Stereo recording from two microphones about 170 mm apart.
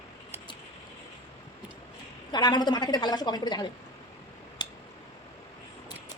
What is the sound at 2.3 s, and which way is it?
A woman's voice, 25° left (ahead or behind).